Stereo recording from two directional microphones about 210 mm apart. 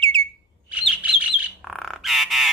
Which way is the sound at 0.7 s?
5° right (ahead or behind).